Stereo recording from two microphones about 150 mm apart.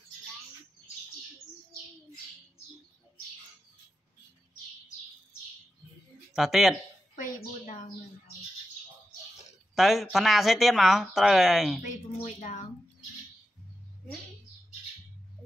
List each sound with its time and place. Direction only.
6.3 s speech: centre (ahead or behind)
9.8 s speech: centre (ahead or behind)
11.8 s a sound: 60° left (ahead or behind)